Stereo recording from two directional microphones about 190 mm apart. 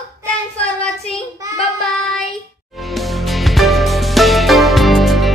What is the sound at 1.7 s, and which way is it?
Speech, 5° left (ahead or behind).